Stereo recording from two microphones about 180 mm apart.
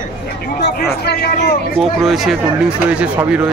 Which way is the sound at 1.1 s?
65° left (ahead or behind).